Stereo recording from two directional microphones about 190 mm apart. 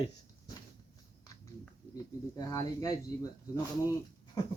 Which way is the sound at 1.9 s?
20° left (ahead or behind).